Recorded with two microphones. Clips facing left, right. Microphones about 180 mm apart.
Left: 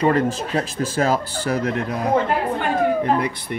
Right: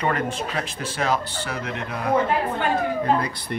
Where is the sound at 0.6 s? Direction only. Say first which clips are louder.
Left 6 dB; 40° left (ahead or behind).